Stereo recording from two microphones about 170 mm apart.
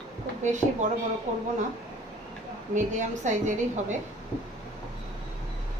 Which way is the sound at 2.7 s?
45° right (ahead or behind).